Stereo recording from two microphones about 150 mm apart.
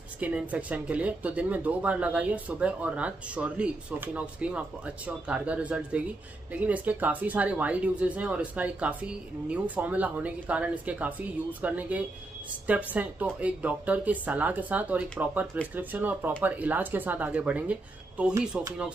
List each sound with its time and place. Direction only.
0.2 s speech: 10° right (ahead or behind)